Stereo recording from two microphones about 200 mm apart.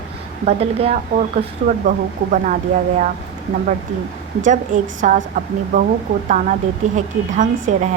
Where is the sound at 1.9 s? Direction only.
40° right (ahead or behind).